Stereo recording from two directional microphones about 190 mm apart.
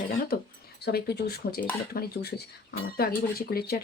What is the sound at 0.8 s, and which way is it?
Speech, 60° left (ahead or behind).